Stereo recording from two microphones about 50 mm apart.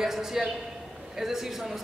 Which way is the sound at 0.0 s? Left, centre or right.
Centre.